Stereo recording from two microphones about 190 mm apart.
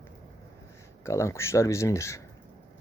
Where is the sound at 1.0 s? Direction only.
15° left (ahead or behind).